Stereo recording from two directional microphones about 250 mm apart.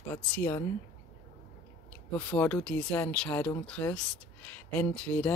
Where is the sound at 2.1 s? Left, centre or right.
Centre.